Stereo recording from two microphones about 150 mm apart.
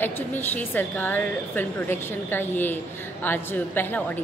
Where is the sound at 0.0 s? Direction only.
10° left (ahead or behind).